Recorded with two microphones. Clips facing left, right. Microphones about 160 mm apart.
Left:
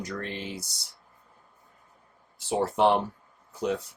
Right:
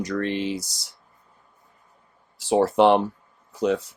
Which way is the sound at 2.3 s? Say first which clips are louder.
Right 7 dB; 90° right.